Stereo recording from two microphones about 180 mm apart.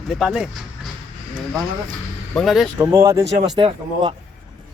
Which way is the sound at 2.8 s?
15° right (ahead or behind).